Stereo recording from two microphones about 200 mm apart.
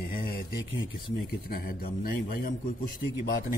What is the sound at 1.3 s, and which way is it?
A man's voice, 50° left (ahead or behind).